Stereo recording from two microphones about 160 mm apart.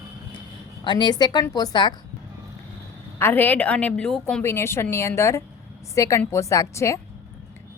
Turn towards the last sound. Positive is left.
turn(degrees=20)  # may be behind; listen again after turning